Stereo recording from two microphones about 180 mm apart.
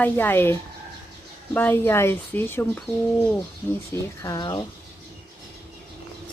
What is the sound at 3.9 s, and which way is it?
Speech, 20° left (ahead or behind).